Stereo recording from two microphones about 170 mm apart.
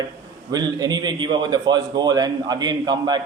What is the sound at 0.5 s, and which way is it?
A man's voice, 25° right (ahead or behind).